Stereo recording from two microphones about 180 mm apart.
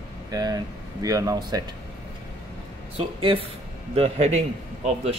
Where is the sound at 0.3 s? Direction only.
20° right (ahead or behind).